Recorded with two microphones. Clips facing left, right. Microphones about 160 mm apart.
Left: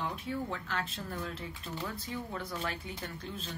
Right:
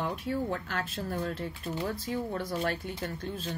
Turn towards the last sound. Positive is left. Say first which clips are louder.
# right 6 dB
turn(degrees=-50)  # may be behind; listen again after turning